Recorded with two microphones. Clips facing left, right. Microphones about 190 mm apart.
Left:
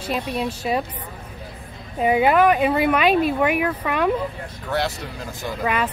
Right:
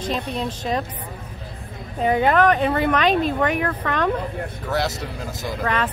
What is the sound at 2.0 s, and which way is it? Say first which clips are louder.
Speech: left 1 dB; 10° left (ahead or behind).